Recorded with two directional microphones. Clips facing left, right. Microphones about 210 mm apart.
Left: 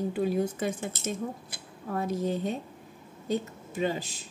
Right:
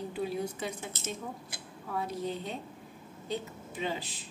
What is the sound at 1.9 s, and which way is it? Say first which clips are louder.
A woman's voice: left 5 dB; 45° left (ahead or behind).